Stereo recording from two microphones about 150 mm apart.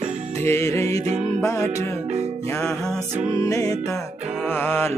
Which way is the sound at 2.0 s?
45° right (ahead or behind).